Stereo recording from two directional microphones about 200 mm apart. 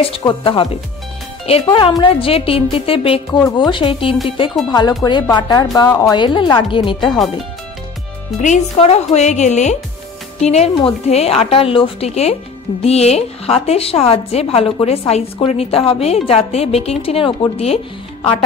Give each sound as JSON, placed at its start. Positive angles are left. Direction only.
{"t": 0.0, "sound": "a woman's voice", "side_deg": 25}
{"t": 8.4, "sound": "a woman's voice", "side_deg": 35}